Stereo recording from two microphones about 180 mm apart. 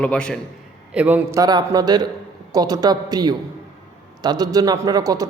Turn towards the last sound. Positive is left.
turn(degrees=-20)  # may be behind; listen again after turning